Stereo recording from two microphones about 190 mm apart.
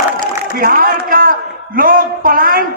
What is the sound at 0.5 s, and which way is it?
A man's voice, 50° right (ahead or behind).